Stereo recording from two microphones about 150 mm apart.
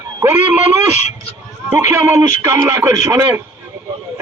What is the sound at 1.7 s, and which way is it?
Speech, 20° right (ahead or behind).